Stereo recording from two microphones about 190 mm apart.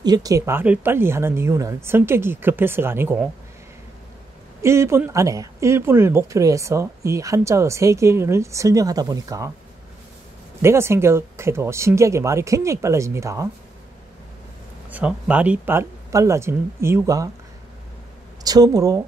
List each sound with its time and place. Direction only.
0.0 s speech: 20° right (ahead or behind)
4.6 s speech: 15° right (ahead or behind)
10.6 s speech: 15° right (ahead or behind)
14.9 s speech: 5° right (ahead or behind)
18.4 s speech: 20° right (ahead or behind)